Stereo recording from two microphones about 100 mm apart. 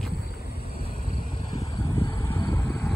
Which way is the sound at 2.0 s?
40° left (ahead or behind).